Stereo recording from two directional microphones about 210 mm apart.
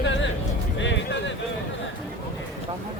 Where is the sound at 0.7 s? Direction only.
60° left (ahead or behind).